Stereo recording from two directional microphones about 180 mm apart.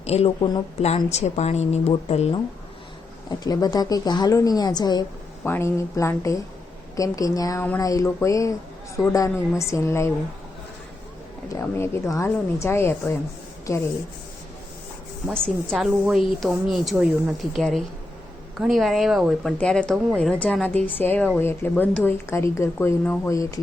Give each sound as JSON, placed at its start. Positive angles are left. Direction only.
{"t": 0.0, "sound": "a woman's voice", "side_deg": 35}
{"t": 3.2, "sound": "a woman's voice", "side_deg": 20}
{"t": 11.5, "sound": "a woman's voice", "side_deg": 15}
{"t": 15.3, "sound": "a woman's voice", "side_deg": 5}
{"t": 15.9, "sound": "a woman's voice", "side_deg": -5}